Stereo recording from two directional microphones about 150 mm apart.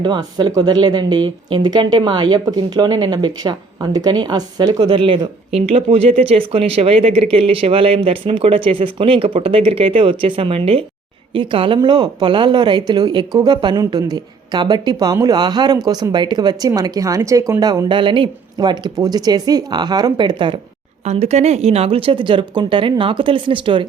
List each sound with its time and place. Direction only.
0.0 s speech: 30° right (ahead or behind)
21.0 s speech: 45° right (ahead or behind)